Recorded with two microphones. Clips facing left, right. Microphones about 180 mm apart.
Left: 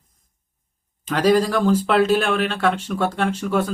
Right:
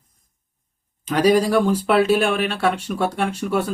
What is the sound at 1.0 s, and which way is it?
Speech, 10° right (ahead or behind).